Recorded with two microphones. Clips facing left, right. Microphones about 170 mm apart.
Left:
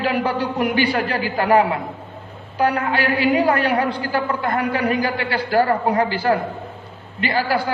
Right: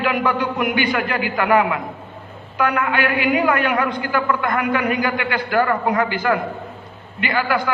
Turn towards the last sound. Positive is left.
turn(degrees=35)  # may be behind; listen again after turning